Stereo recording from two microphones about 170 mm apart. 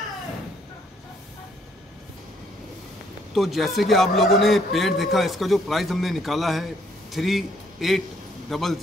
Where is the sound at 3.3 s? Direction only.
Centre (ahead or behind).